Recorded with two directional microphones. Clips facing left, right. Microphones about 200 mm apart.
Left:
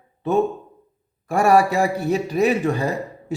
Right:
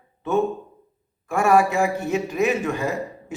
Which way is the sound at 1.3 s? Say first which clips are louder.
Left 2 dB; 35° left (ahead or behind).